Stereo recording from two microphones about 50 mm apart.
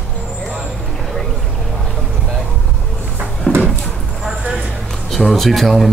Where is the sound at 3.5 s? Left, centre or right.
Left.